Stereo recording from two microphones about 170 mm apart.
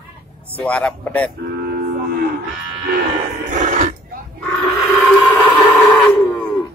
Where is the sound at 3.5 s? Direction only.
45° right (ahead or behind).